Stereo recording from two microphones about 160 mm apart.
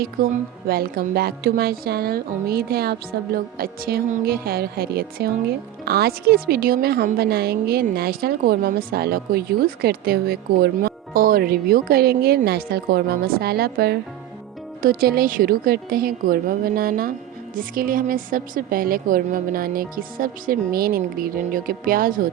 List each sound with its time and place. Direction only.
0.2 s speech: 70° right (ahead or behind)
14.8 s a woman's voice: 65° right (ahead or behind)